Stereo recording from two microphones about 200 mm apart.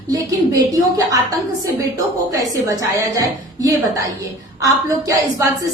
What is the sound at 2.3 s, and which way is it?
A woman's voice, 15° right (ahead or behind).